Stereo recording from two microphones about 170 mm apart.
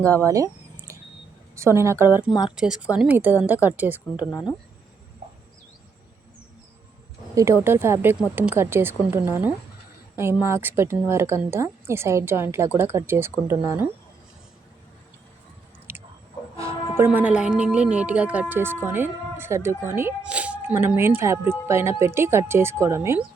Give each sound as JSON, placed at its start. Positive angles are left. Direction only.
{"t": 0.3, "sound": "a sound", "side_deg": -20}
{"t": 1.5, "sound": "speech", "side_deg": -15}
{"t": 4.3, "sound": "speech", "side_deg": 20}
{"t": 7.3, "sound": "speech", "side_deg": -15}
{"t": 15.9, "sound": "chewing", "side_deg": -15}
{"t": 17.0, "sound": "speech", "side_deg": -10}